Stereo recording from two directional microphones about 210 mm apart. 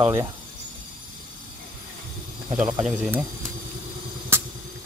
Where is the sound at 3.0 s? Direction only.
5° right (ahead or behind).